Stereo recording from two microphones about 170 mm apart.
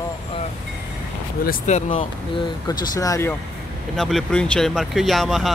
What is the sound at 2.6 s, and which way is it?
Speech, 20° left (ahead or behind).